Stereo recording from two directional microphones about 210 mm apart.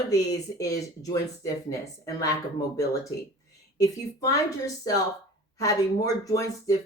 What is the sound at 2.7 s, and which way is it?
Speech, 15° left (ahead or behind).